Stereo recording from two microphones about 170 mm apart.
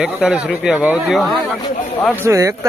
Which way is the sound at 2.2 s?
15° right (ahead or behind).